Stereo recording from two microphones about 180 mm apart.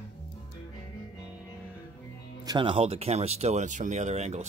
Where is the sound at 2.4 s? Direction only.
30° right (ahead or behind).